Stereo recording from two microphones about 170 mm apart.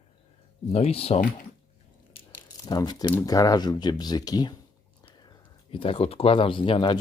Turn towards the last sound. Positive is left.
turn(degrees=30)  # may be behind; listen again after turning